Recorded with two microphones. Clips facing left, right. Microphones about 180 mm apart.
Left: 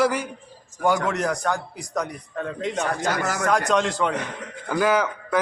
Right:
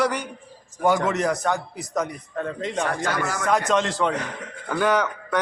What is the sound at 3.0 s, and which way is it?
Speech, 40° left (ahead or behind).